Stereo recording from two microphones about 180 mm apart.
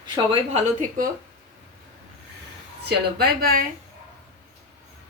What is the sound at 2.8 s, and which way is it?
Speech, 60° right (ahead or behind).